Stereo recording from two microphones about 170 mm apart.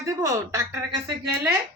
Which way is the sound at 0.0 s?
15° right (ahead or behind).